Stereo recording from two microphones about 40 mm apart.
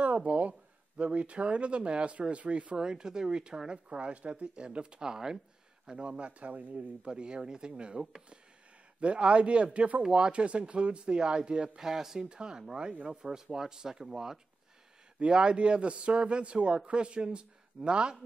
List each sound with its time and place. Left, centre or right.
0.0 s speech: right
2.8 s speech: centre
5.9 s speech: right
7.1 s speech: right
9.0 s speech: right
11.8 s speech: centre
12.3 s speech: right
15.1 s speech: right